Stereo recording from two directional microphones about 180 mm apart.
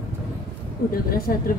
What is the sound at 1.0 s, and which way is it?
Speech, 55° left (ahead or behind).